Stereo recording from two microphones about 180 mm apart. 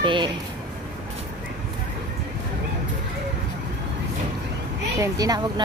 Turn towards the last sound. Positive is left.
turn(degrees=-20)  # may be behind; listen again after turning